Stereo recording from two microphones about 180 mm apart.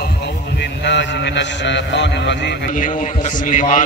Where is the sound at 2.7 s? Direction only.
45° left (ahead or behind).